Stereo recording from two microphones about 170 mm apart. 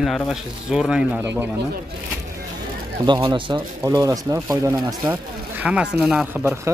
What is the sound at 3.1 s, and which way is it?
Speech, 25° right (ahead or behind).